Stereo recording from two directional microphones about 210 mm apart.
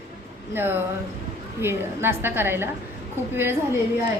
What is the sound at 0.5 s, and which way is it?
A woman's voice, 10° right (ahead or behind).